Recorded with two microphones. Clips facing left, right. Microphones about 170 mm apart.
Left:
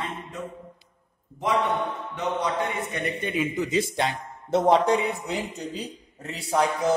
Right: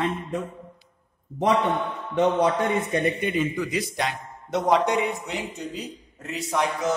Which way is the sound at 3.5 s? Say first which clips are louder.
Left 2 dB; 25° left (ahead or behind).